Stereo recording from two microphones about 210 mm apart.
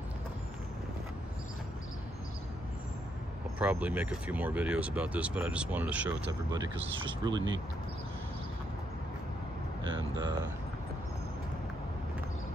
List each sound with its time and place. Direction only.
3.5 s speech: 5° right (ahead or behind)
9.8 s vehicle: 20° right (ahead or behind)